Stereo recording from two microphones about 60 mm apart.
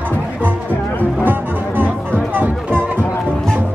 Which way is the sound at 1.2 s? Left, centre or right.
Right.